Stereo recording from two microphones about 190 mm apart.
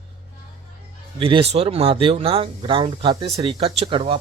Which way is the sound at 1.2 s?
30° right (ahead or behind).